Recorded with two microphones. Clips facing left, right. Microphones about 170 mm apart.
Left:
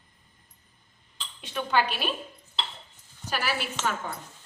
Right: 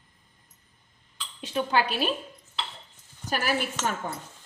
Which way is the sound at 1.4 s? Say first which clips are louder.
Right 1 dB; 40° right (ahead or behind).